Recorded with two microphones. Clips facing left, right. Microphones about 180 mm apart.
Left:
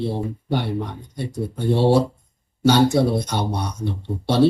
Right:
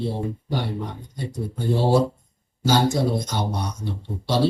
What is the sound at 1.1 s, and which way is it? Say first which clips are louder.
Speech: left 3 dB; 65° left (ahead or behind).